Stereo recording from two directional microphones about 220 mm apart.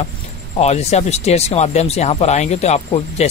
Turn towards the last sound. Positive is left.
turn(degrees=30)  # may be behind; listen again after turning